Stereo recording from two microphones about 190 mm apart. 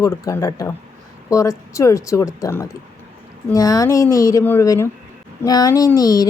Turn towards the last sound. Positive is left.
turn(degrees=20)  # may be behind; listen again after turning